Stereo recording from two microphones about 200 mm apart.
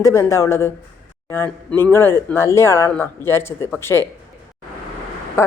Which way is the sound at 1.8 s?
10° left (ahead or behind).